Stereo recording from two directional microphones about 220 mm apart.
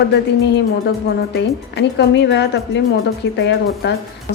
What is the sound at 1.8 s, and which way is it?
A woman's voice, 50° left (ahead or behind).